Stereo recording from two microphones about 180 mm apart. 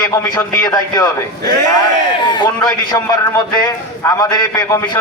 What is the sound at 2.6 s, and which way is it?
A man's voice, 20° left (ahead or behind).